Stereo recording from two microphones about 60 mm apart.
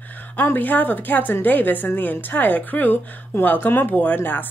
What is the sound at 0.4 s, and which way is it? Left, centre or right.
Speech, left.